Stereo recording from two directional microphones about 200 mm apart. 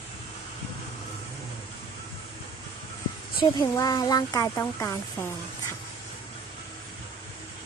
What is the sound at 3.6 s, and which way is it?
Speech, 20° left (ahead or behind).